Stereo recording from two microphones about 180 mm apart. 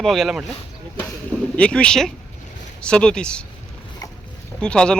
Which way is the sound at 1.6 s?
5° left (ahead or behind).